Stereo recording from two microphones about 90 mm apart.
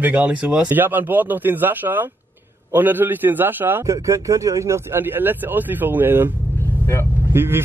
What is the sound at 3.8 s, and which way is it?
Speech, 40° right (ahead or behind).